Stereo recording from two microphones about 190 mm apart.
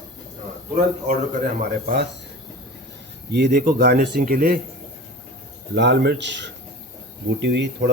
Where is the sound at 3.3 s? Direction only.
60° right (ahead or behind).